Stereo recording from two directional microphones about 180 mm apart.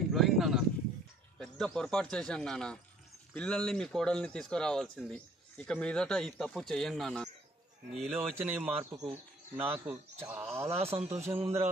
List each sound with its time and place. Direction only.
0.1 s a sound: centre (ahead or behind)
1.4 s speech: 5° left (ahead or behind)
7.9 s speech: 35° right (ahead or behind)
8.2 s speech: 5° right (ahead or behind)
10.7 s speech: 35° right (ahead or behind)